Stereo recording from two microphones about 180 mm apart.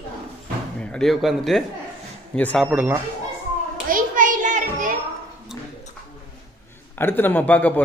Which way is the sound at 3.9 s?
45° right (ahead or behind).